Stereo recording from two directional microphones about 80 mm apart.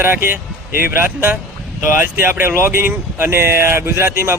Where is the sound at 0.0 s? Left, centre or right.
Right.